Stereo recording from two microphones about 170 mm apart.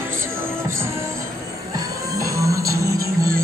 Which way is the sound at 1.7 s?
20° right (ahead or behind).